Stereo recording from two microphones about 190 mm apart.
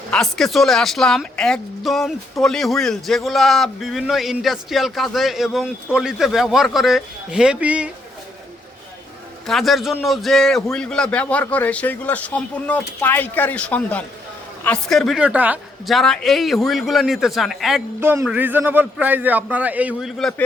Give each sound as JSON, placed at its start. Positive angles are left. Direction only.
{"t": 0.1, "sound": "speech", "side_deg": 0}
{"t": 9.5, "sound": "a man's voice", "side_deg": 0}
{"t": 18.0, "sound": "a man's voice", "side_deg": -10}